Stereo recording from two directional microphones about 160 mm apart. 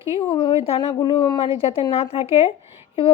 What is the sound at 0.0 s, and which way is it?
A woman's voice, 35° left (ahead or behind).